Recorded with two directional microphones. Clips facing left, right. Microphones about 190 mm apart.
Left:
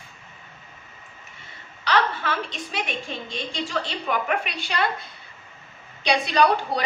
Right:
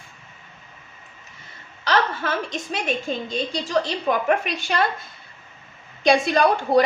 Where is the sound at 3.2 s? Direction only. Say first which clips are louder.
Right 5 dB; 40° right (ahead or behind).